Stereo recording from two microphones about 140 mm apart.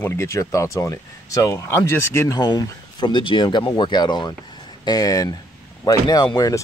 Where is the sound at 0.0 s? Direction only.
20° left (ahead or behind).